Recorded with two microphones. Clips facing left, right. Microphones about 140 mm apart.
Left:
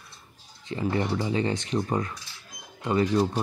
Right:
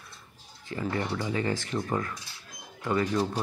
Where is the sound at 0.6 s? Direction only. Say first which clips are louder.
Left 4 dB; 20° left (ahead or behind).